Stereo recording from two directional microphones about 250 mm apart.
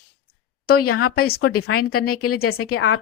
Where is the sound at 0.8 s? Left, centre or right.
Left.